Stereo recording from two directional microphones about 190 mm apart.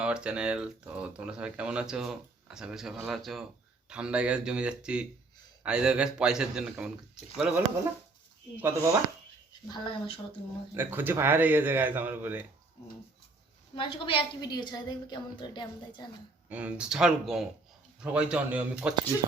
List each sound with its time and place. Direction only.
0.0 s speech: 5° right (ahead or behind)
9.6 s a woman's voice: 25° left (ahead or behind)
10.8 s speech: 10° right (ahead or behind)
13.7 s a woman's voice: 25° left (ahead or behind)
16.5 s speech: 5° right (ahead or behind)